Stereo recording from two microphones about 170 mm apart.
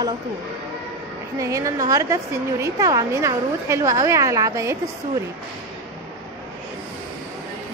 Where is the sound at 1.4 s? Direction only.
20° right (ahead or behind).